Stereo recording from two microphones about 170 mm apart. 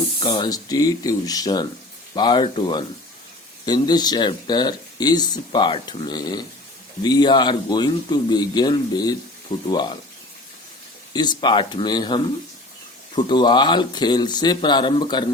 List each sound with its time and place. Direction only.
0.2 s speech: 25° left (ahead or behind)
11.1 s speech: 25° left (ahead or behind)